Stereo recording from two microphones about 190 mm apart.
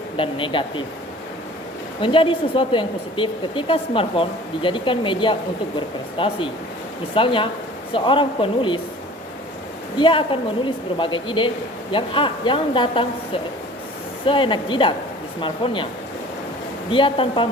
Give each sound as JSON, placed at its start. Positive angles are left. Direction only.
{"t": 0.2, "sound": "speech", "side_deg": 25}
{"t": 2.0, "sound": "speech", "side_deg": 25}
{"t": 10.0, "sound": "speech", "side_deg": 30}
{"t": 16.9, "sound": "speech", "side_deg": 25}